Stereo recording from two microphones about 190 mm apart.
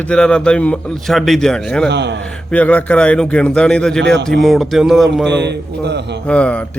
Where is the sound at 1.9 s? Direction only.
65° right (ahead or behind).